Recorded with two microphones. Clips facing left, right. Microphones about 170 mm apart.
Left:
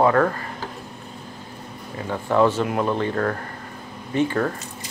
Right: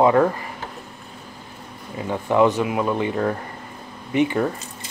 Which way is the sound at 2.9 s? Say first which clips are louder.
Right 1 dB; 15° right (ahead or behind).